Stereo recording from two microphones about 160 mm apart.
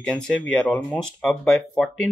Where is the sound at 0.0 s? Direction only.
5° left (ahead or behind).